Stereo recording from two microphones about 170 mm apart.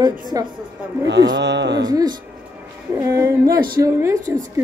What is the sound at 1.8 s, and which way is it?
A woman's voice, 25° right (ahead or behind).